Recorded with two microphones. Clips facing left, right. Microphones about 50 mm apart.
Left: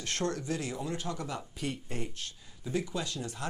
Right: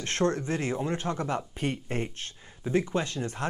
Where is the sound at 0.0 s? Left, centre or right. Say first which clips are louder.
Right 6 dB; right.